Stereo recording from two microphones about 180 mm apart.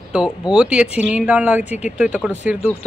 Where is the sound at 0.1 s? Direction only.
5° right (ahead or behind).